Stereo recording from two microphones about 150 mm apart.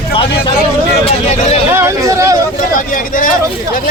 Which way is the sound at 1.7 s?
20° right (ahead or behind).